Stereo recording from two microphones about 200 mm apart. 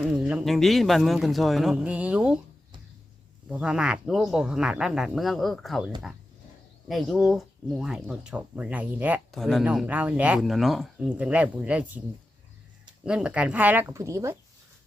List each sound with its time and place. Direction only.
0.0 s speech: 5° right (ahead or behind)
3.5 s speech: 5° right (ahead or behind)
13.1 s speech: 5° right (ahead or behind)